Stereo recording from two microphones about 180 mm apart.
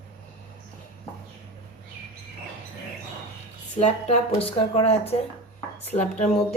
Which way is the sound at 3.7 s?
40° left (ahead or behind).